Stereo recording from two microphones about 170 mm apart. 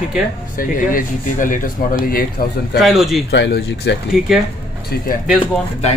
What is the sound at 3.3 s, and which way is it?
Speech, 85° left.